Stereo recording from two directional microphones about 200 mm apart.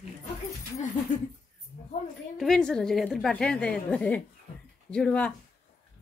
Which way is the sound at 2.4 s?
Centre (ahead or behind).